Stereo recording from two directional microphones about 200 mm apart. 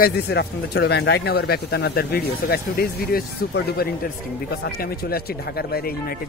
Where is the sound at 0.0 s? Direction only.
55° left (ahead or behind).